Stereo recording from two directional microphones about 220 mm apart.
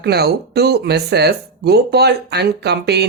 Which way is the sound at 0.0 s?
45° right (ahead or behind).